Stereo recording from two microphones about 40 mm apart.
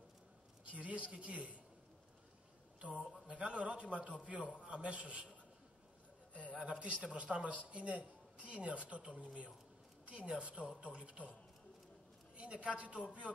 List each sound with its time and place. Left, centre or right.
0.7 s a woman's voice: right
2.8 s a woman's voice: right
6.3 s speech: left
7.0 s a man's voice: right
12.4 s a woman's voice: right